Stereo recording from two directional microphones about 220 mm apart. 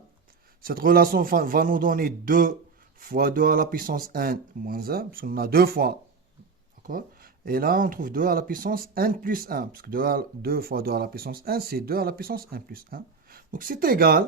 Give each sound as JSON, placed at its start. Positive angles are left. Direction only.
{"t": 0.6, "sound": "speech", "side_deg": -40}